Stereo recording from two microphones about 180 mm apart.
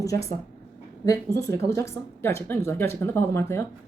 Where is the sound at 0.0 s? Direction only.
20° left (ahead or behind).